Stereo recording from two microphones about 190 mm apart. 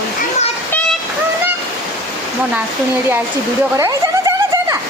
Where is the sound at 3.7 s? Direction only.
15° right (ahead or behind).